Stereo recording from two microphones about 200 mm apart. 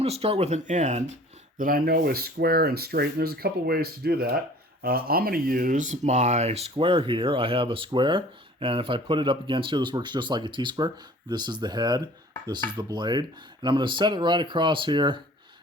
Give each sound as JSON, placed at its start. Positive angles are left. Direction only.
{"t": 0.0, "sound": "speech", "side_deg": -30}